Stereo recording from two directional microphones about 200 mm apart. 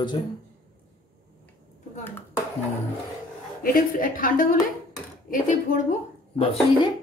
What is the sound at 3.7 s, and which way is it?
Speech, 45° left (ahead or behind).